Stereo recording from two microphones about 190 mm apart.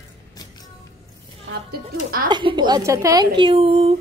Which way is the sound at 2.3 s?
25° right (ahead or behind).